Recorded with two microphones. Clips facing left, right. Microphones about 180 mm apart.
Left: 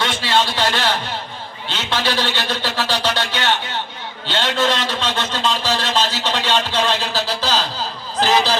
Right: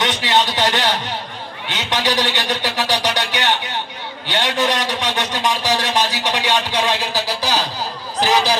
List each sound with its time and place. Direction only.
0.0 s a man's voice: 20° right (ahead or behind)